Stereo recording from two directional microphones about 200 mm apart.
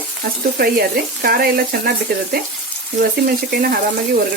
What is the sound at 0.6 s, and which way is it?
Speech, 50° right (ahead or behind).